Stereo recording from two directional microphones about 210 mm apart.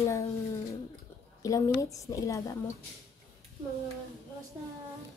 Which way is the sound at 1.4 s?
15° left (ahead or behind).